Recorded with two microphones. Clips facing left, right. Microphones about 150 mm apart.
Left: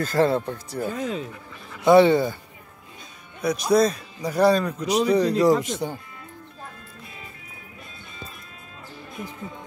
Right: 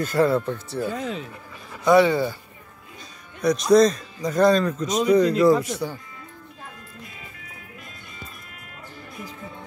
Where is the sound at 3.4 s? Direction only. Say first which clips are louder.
Right 3 dB; 5° left (ahead or behind).